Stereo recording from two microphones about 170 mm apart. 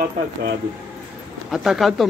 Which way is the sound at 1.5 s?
Centre (ahead or behind).